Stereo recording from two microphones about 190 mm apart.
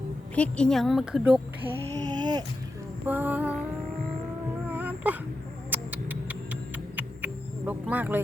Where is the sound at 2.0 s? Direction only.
20° right (ahead or behind).